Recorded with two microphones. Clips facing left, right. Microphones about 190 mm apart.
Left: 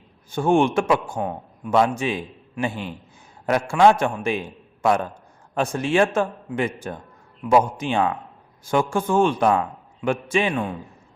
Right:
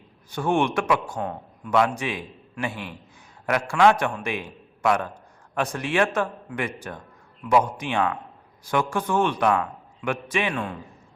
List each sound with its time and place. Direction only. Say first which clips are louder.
0.3 s a man's voice: left 4 dB; 25° left (ahead or behind)